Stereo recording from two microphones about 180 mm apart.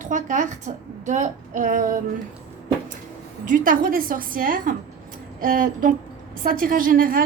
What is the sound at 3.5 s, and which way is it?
A woman's voice, 50° right (ahead or behind).